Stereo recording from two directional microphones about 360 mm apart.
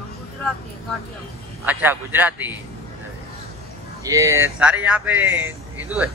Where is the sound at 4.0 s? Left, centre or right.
Centre.